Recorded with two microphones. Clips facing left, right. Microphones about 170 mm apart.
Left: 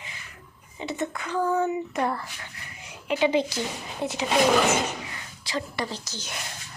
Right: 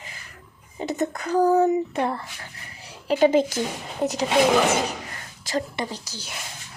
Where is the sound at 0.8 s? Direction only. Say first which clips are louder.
Right 4 dB; 40° right (ahead or behind).